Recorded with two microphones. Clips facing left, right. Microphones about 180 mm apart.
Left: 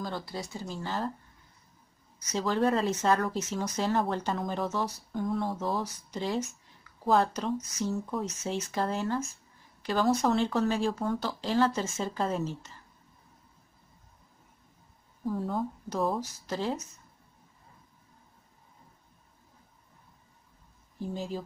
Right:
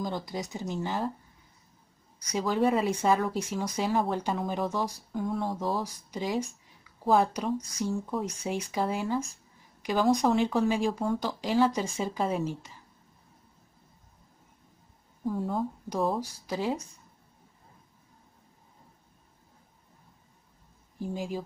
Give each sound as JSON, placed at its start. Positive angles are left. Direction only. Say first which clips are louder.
{"t": 0.0, "sound": "speech", "louder": "right 3 dB", "side_deg": -15}
{"t": 2.3, "sound": "speech", "louder": "right 1 dB", "side_deg": -10}
{"t": 5.2, "sound": "speech", "louder": "even", "side_deg": 0}
{"t": 7.9, "sound": "speech", "louder": "right 2 dB", "side_deg": 0}
{"t": 8.3, "sound": "speech", "louder": "right 1 dB", "side_deg": -10}
{"t": 15.2, "sound": "speech", "louder": "right 1 dB", "side_deg": 0}
{"t": 16.2, "sound": "speech", "louder": "right 1 dB", "side_deg": -10}
{"t": 21.0, "sound": "speech", "louder": "right 1 dB", "side_deg": -10}